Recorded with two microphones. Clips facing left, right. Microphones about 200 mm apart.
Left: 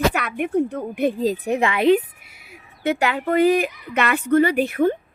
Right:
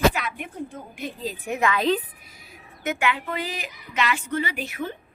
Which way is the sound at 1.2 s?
40° left (ahead or behind).